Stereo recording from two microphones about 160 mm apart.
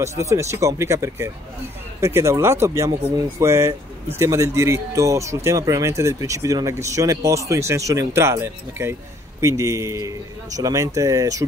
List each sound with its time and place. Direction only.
0.0 s speech: 20° right (ahead or behind)